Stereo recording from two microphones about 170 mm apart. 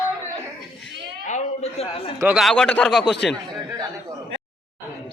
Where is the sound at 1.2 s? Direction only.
40° left (ahead or behind).